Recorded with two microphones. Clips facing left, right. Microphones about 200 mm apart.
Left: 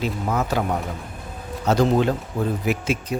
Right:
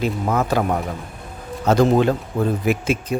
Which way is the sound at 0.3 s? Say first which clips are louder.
Right 3 dB; 60° right (ahead or behind).